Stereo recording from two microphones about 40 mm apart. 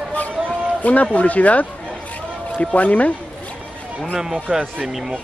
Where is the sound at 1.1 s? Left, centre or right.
Left.